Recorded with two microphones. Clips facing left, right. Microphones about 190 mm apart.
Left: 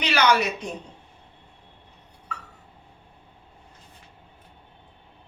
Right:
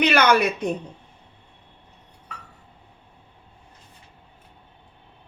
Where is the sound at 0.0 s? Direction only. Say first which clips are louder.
Right 3 dB; 55° right (ahead or behind).